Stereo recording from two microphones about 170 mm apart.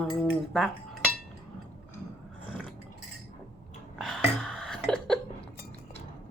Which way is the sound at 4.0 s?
Centre (ahead or behind).